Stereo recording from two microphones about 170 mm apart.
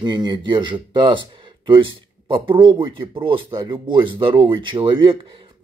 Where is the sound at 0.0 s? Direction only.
25° right (ahead or behind).